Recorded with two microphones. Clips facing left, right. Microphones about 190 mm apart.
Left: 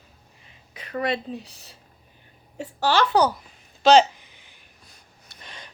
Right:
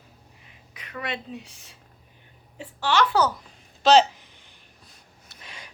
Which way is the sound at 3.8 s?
Centre (ahead or behind).